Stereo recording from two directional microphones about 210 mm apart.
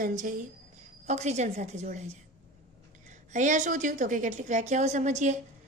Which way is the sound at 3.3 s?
35° right (ahead or behind).